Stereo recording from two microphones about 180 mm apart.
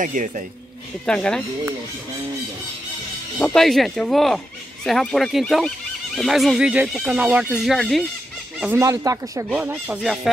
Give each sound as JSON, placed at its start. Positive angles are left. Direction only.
{"t": 0.0, "sound": "speech", "side_deg": -45}
{"t": 1.0, "sound": "speech", "side_deg": 5}
{"t": 3.3, "sound": "speech", "side_deg": 5}
{"t": 8.7, "sound": "speech", "side_deg": -20}